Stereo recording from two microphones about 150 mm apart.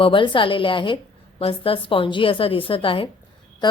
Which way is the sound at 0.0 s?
35° left (ahead or behind).